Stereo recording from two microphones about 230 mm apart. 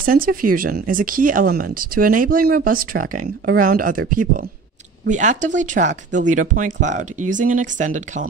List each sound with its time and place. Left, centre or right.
0.0 s speech: right